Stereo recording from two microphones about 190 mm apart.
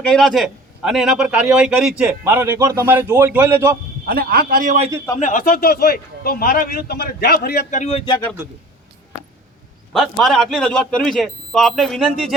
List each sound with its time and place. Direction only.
0.0 s a man's voice: 5° left (ahead or behind); by 3.8 s 15° right (ahead or behind)
4.0 s a man's voice: 50° right (ahead or behind)
5.2 s a man's voice: 45° left (ahead or behind)
7.7 s speech: 35° left (ahead or behind)
9.9 s a man's voice: centre (ahead or behind)